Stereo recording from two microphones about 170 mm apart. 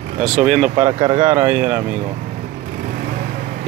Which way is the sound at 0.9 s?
30° right (ahead or behind).